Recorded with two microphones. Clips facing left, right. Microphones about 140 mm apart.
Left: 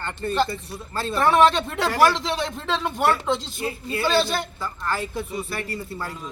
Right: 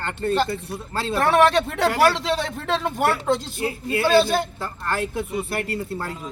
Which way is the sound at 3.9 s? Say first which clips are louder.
Right 5 dB; 60° right (ahead or behind).